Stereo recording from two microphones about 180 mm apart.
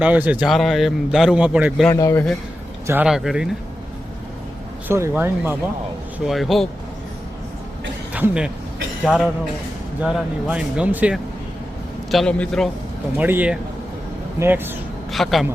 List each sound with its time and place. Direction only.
0.0 s speech: 10° right (ahead or behind)
1.9 s speech: 15° left (ahead or behind)
2.8 s speech: 10° right (ahead or behind)
3.1 s speech: centre (ahead or behind)
4.9 s speech: 15° right (ahead or behind)
6.2 s speech: centre (ahead or behind)
8.1 s speech: 5° right (ahead or behind)
12.1 s speech: 5° left (ahead or behind)
13.1 s speech: 10° right (ahead or behind)
15.1 s speech: centre (ahead or behind)